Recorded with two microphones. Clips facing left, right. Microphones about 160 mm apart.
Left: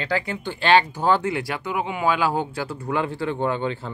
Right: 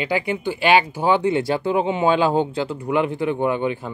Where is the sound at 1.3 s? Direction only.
25° right (ahead or behind).